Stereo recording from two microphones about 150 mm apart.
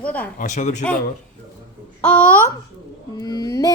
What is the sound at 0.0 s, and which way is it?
Babbling, 10° left (ahead or behind).